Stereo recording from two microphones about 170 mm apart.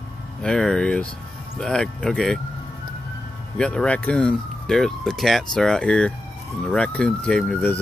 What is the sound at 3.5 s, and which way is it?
Speech, 5° left (ahead or behind).